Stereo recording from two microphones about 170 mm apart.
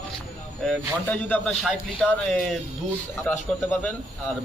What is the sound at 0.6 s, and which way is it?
Speech, 10° left (ahead or behind).